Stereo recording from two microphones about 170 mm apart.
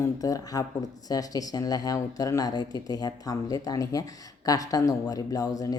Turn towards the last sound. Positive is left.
turn(degrees=20)  # may be behind; listen again after turning